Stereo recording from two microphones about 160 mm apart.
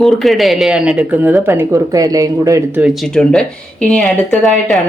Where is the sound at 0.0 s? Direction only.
Centre (ahead or behind); by 2.8 s 20° right (ahead or behind).